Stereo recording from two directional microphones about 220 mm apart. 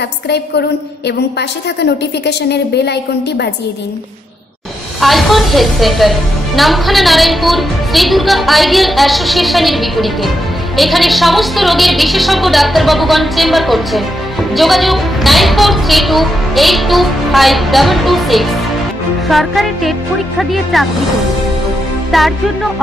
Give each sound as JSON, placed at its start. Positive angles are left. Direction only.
{"t": 2.2, "sound": "a woman's voice", "side_deg": 50}
{"t": 5.0, "sound": "a woman's voice", "side_deg": 0}
{"t": 22.1, "sound": "a woman's voice", "side_deg": 0}